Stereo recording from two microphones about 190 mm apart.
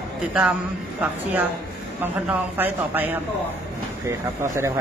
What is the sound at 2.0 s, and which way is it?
A man's voice, 10° right (ahead or behind).